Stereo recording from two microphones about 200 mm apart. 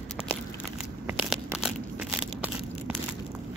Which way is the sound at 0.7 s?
5° right (ahead or behind).